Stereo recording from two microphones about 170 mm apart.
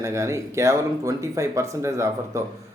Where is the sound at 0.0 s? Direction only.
15° right (ahead or behind).